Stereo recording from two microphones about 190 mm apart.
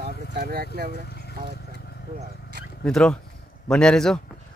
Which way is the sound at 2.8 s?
5° left (ahead or behind).